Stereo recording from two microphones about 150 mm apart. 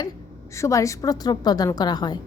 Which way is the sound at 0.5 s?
20° left (ahead or behind).